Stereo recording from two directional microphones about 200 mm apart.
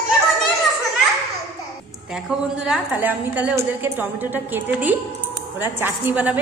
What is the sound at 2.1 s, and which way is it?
A woman's voice, 5° right (ahead or behind).